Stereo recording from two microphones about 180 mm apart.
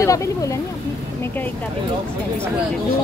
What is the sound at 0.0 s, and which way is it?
Speech, 15° left (ahead or behind).